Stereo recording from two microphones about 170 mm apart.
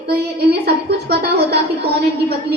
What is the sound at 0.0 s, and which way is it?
A woman's voice, 70° right (ahead or behind).